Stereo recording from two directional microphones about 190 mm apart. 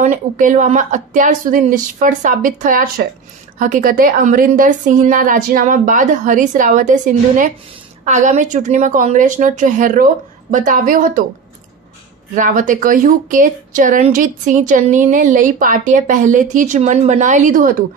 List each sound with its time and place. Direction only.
0.0 s speech: 45° right (ahead or behind)
12.4 s speech: 45° right (ahead or behind)